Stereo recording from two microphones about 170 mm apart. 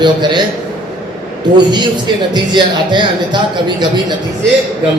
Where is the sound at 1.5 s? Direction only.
25° right (ahead or behind).